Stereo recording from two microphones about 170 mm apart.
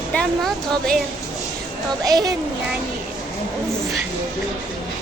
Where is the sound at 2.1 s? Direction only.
20° right (ahead or behind).